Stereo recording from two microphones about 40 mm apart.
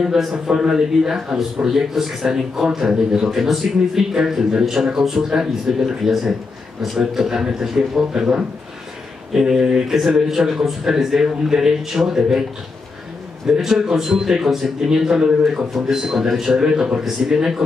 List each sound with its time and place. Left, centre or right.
0.0 s a man's voice: centre
13.6 s a man's voice: centre